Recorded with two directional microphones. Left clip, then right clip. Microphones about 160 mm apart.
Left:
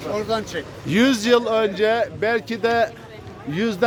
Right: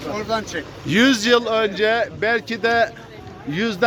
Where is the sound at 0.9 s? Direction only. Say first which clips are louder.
Right 2 dB; 10° left (ahead or behind).